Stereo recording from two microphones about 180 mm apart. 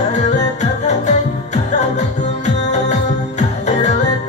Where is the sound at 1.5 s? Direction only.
40° left (ahead or behind).